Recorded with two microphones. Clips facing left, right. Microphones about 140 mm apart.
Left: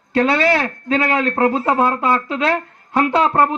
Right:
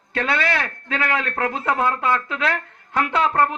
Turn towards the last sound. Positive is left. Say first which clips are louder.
# left 4 dB
turn(degrees=20)  # may be behind; listen again after turning